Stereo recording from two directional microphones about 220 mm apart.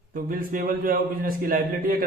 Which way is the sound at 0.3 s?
40° right (ahead or behind).